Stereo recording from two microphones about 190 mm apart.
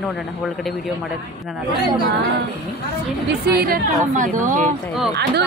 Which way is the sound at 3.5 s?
50° right (ahead or behind).